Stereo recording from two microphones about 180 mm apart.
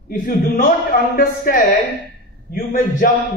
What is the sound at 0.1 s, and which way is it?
A man's voice, 50° left (ahead or behind).